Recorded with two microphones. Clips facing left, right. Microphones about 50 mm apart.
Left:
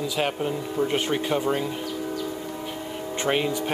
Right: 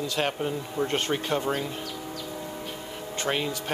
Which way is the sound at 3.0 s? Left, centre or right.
Left.